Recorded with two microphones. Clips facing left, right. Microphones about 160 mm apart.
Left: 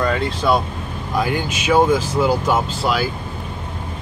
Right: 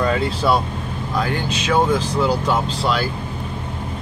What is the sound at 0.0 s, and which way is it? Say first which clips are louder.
Speech: even; 5° right (ahead or behind).